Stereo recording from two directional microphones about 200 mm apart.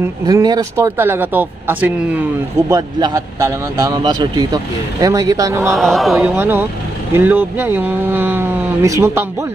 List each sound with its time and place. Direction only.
0.3 s a man's voice: 15° right (ahead or behind)
5.7 s speech: centre (ahead or behind); by 9.2 s 15° right (ahead or behind)